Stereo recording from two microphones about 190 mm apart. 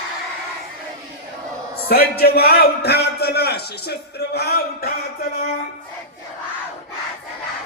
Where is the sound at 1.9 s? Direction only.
55° left (ahead or behind).